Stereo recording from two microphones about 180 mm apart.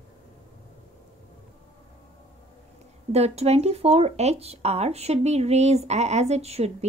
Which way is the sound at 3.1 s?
35° right (ahead or behind).